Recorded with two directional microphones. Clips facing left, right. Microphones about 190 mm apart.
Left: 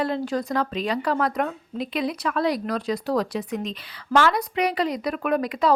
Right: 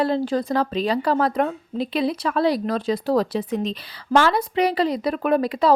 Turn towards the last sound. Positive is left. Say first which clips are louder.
# right 3 dB
turn(degrees=-30)  # may be behind; listen again after turning